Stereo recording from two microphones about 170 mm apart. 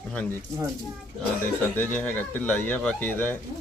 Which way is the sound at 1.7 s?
10° left (ahead or behind).